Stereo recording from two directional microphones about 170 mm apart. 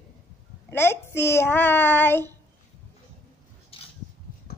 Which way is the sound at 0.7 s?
15° left (ahead or behind).